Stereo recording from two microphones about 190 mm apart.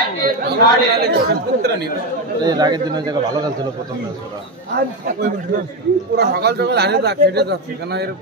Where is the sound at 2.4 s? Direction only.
20° right (ahead or behind).